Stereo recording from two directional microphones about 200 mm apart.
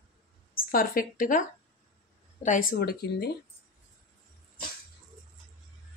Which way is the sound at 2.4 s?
45° left (ahead or behind).